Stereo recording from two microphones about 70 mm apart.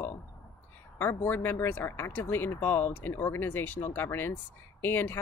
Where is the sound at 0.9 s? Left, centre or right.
Left.